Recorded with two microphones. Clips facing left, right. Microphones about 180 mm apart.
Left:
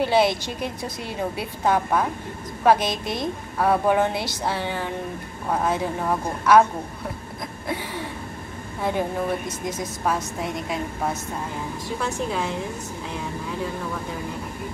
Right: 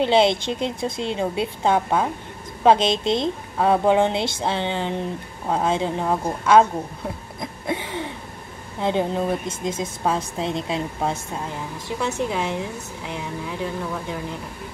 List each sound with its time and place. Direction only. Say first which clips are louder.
0.0 s a woman's voice: right 2 dB; 25° right (ahead or behind)
7.6 s a sound: right 3 dB; 20° right (ahead or behind)
8.8 s a woman's voice: right 3 dB; 20° right (ahead or behind)